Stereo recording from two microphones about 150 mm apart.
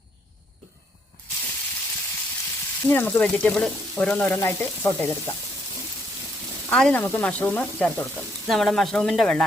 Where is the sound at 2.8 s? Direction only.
15° left (ahead or behind).